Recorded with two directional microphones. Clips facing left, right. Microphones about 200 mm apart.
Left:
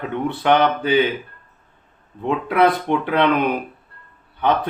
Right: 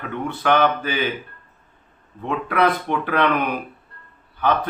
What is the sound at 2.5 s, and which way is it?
Speech, 20° left (ahead or behind).